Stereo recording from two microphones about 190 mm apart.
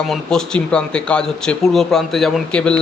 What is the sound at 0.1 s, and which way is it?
A man's voice, 5° left (ahead or behind).